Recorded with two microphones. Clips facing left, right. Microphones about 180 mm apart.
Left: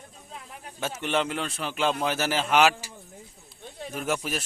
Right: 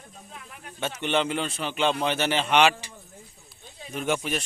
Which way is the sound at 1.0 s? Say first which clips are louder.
Right 2 dB; centre (ahead or behind).